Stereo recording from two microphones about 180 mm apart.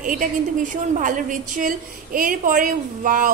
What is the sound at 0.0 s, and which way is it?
A woman's voice, 45° right (ahead or behind).